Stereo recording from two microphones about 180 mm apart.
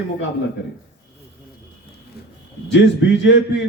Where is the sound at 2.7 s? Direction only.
85° left.